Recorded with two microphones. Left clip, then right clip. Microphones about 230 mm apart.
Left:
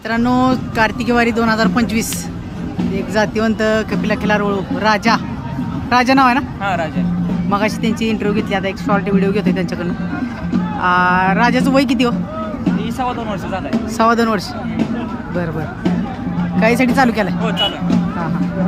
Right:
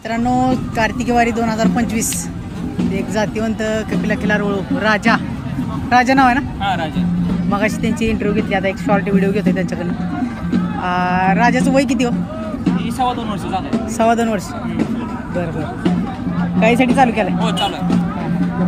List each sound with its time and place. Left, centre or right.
0.1 s speech: centre
10.8 s speech: centre
16.6 s speech: centre